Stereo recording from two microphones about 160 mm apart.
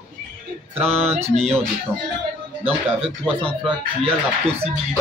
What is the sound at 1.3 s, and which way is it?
Speech, 45° right (ahead or behind).